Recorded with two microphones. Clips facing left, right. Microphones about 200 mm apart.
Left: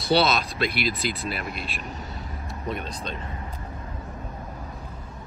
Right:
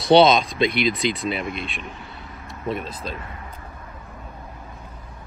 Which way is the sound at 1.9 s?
40° left (ahead or behind).